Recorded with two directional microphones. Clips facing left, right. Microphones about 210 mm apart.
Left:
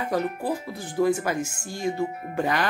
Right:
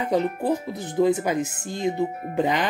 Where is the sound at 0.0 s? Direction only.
20° right (ahead or behind).